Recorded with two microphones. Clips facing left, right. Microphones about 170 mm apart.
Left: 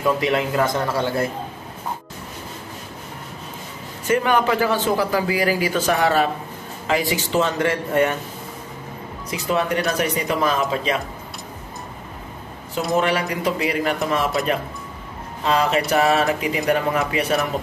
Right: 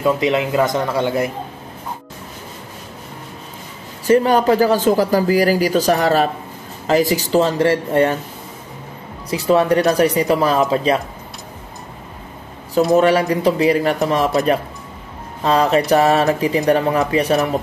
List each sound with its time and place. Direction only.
0.0 s a man's voice: 20° right (ahead or behind)
4.1 s a man's voice: 35° right (ahead or behind)
9.3 s a man's voice: 35° right (ahead or behind)
12.9 s a man's voice: 35° right (ahead or behind)